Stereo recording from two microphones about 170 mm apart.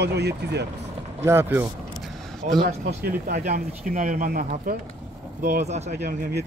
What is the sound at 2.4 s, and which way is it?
Speech, 50° right (ahead or behind).